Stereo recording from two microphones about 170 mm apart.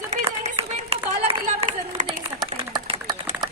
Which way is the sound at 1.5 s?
45° right (ahead or behind).